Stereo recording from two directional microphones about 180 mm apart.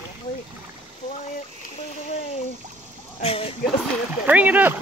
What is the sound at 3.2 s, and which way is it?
Speech, 35° left (ahead or behind).